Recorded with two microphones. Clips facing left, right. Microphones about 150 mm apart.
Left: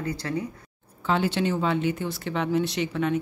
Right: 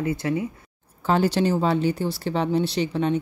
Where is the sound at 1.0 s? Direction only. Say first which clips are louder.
Right 4 dB; 40° right (ahead or behind).